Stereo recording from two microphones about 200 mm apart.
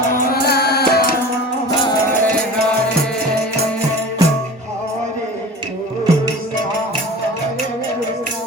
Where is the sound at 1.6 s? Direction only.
15° left (ahead or behind).